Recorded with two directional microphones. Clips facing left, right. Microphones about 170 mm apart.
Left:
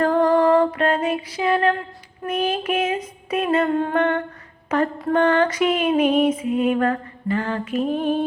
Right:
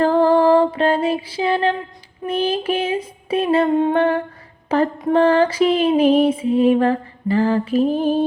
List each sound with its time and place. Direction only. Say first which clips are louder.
0.0 s music: right 3 dB; 30° right (ahead or behind)
2.2 s lullaby: right 3 dB; 30° right (ahead or behind)
3.7 s humming: right 5 dB; 20° right (ahead or behind)
3.9 s lullaby: right 3 dB; 30° right (ahead or behind)
7.9 s female singing: right 3 dB; centre (ahead or behind)